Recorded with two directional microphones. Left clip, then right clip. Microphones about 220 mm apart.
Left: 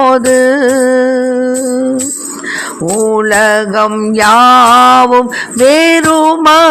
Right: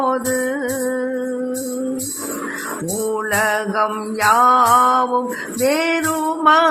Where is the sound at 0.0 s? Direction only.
35° left (ahead or behind).